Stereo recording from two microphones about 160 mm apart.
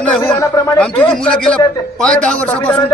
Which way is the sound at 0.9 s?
5° left (ahead or behind).